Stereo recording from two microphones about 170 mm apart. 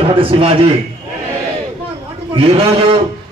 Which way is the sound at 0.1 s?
30° right (ahead or behind).